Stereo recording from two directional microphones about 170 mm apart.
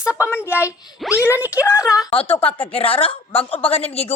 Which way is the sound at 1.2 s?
15° left (ahead or behind).